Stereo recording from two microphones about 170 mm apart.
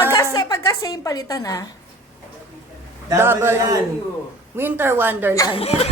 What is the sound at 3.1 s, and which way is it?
Speech, 15° right (ahead or behind).